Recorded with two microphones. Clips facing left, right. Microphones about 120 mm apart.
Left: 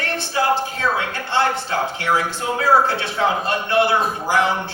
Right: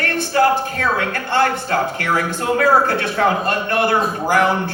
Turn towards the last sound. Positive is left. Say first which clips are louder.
# right 3 dB
turn(degrees=-55)  # may be behind; listen again after turning